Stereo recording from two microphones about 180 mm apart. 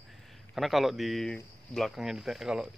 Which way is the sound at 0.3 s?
Centre (ahead or behind).